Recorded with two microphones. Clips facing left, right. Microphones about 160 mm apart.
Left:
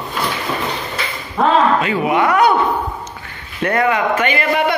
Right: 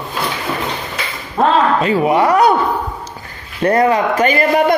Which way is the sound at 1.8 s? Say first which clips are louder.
Right 3 dB; 35° right (ahead or behind).